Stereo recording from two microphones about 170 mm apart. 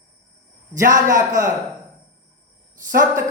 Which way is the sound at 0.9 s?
50° right (ahead or behind).